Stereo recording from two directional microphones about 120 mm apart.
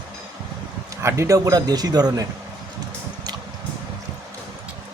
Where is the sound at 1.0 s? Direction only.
25° right (ahead or behind).